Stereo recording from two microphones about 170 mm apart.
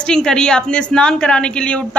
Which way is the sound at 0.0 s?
5° left (ahead or behind).